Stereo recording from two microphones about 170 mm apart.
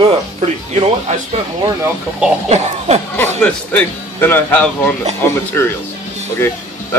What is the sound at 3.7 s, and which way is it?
Speech, 10° left (ahead or behind).